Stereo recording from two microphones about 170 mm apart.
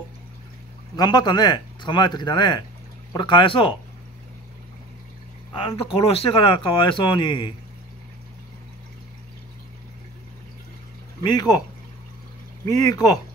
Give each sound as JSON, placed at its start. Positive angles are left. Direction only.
{"t": 0.9, "sound": "speech", "side_deg": 25}
{"t": 5.6, "sound": "speech", "side_deg": 30}
{"t": 11.2, "sound": "speech", "side_deg": 25}
{"t": 12.6, "sound": "speech", "side_deg": 20}